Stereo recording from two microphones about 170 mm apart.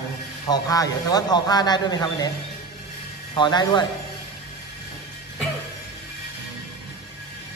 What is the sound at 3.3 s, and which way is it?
Speech, 25° left (ahead or behind).